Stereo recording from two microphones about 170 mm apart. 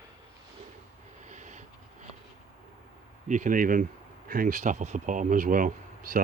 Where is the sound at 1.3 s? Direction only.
45° right (ahead or behind).